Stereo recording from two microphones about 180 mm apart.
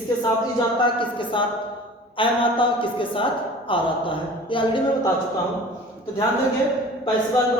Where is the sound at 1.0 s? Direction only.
25° left (ahead or behind).